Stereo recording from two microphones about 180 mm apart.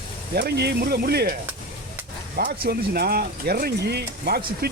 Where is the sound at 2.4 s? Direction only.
55° right (ahead or behind).